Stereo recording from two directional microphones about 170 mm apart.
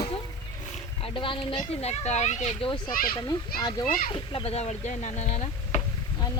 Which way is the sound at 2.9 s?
60° left (ahead or behind).